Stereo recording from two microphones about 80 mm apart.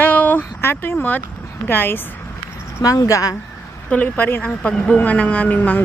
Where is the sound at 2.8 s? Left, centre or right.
Left.